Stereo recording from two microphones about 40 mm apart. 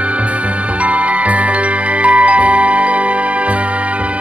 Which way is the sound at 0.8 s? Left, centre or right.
Right.